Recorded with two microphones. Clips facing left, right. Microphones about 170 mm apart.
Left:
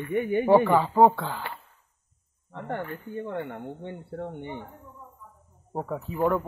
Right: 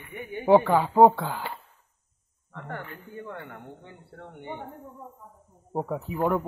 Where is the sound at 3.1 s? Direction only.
25° left (ahead or behind).